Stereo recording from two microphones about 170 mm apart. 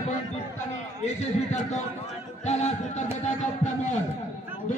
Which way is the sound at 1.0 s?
40° left (ahead or behind).